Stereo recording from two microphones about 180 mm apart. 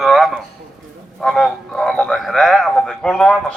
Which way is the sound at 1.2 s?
Centre (ahead or behind).